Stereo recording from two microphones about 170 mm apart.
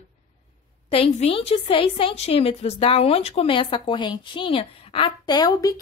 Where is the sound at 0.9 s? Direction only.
35° left (ahead or behind).